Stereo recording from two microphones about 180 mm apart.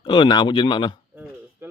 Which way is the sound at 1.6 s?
10° right (ahead or behind).